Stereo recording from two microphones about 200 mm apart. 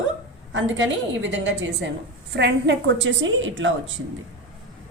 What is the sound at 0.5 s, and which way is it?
A woman's voice, 70° right (ahead or behind).